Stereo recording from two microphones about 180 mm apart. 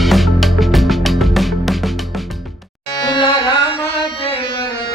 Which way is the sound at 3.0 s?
25° left (ahead or behind).